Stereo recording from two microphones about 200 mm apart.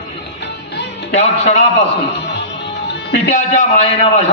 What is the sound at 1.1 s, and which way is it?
Speech, 40° left (ahead or behind).